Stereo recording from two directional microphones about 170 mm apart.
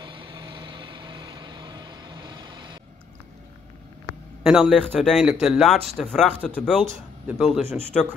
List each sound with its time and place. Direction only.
0.0 s vehicle: 30° right (ahead or behind)
4.4 s speech: centre (ahead or behind)